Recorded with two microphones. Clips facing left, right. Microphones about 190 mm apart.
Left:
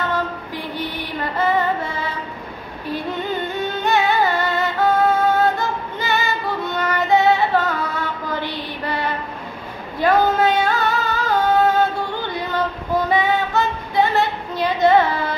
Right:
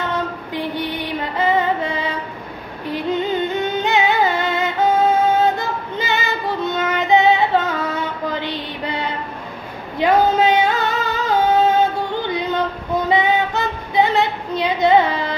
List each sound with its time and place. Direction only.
1.4 s music: 15° right (ahead or behind)
9.9 s singing: 20° right (ahead or behind)
12.4 s female singing: 20° right (ahead or behind)